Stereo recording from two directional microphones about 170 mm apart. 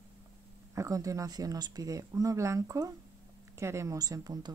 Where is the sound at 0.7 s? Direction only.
20° right (ahead or behind).